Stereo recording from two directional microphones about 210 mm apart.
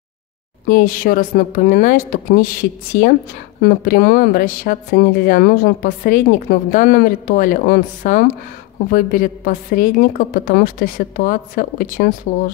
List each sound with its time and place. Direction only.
0.7 s a woman's voice: 45° left (ahead or behind)